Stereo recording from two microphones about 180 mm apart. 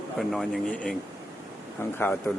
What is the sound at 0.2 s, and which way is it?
Speech, centre (ahead or behind).